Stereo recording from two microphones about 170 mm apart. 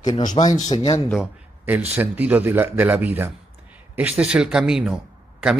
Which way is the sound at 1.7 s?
10° right (ahead or behind).